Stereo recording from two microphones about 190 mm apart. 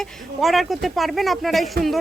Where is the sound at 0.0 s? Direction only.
Centre (ahead or behind).